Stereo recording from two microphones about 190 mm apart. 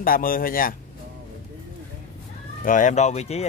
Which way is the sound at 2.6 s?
45° left (ahead or behind).